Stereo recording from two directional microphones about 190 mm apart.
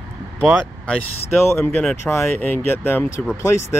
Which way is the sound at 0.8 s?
10° left (ahead or behind).